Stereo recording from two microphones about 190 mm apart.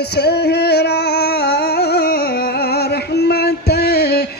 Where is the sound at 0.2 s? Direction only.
60° left (ahead or behind).